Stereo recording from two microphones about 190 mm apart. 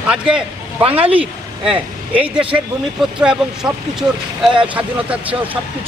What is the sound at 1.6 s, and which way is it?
Speech, 5° right (ahead or behind).